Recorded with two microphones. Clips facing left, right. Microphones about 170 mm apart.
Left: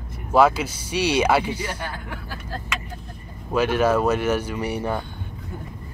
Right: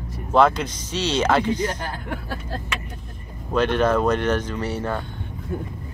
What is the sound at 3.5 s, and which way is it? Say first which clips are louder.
Speech: even; 5° left (ahead or behind).